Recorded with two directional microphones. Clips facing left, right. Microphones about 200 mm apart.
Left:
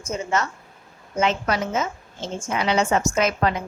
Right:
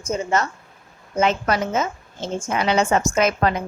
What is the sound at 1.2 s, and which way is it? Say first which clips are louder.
A woman's voice: right 2 dB; 45° right (ahead or behind).